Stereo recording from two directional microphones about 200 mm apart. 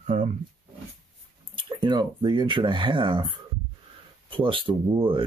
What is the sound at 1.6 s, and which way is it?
Speech, 25° right (ahead or behind).